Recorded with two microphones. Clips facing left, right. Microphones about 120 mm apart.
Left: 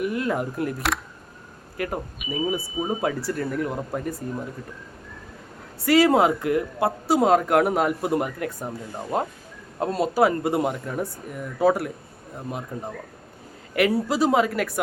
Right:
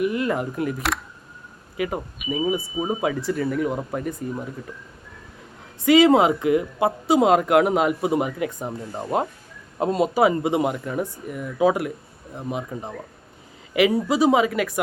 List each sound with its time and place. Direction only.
0.0 s speech: centre (ahead or behind)
5.8 s speech: centre (ahead or behind); by 9.0 s 20° right (ahead or behind)
9.7 s speech: 5° right (ahead or behind)
10.2 s speech: 15° right (ahead or behind)
14.1 s speech: 15° right (ahead or behind)